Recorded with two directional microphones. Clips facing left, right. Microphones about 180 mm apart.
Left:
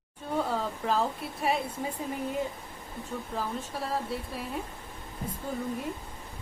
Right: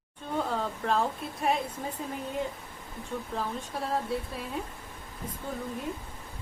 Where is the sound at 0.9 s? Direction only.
5° left (ahead or behind).